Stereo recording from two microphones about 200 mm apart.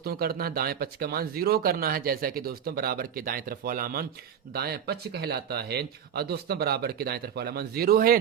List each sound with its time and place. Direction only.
0.0 s speech: 50° right (ahead or behind)